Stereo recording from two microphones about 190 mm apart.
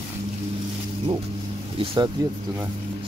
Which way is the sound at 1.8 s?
30° right (ahead or behind).